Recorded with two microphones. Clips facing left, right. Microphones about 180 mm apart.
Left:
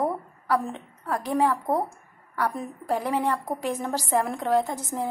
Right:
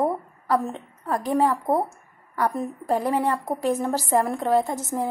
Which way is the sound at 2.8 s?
10° right (ahead or behind).